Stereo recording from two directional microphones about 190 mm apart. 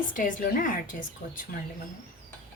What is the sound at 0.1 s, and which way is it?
Speech, 45° left (ahead or behind).